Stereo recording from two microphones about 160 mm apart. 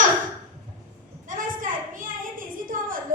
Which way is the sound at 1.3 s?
55° right (ahead or behind).